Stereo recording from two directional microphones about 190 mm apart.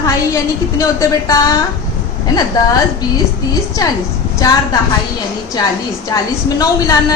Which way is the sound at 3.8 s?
20° left (ahead or behind).